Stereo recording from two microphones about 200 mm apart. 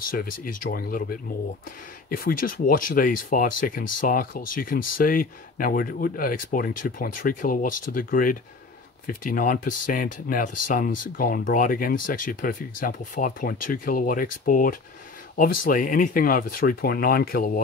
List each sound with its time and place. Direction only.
0.2 s speech: 50° left (ahead or behind)